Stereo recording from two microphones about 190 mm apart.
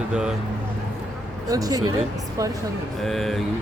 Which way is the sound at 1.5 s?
20° right (ahead or behind).